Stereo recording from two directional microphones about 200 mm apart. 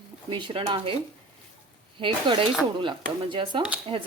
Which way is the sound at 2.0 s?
25° right (ahead or behind).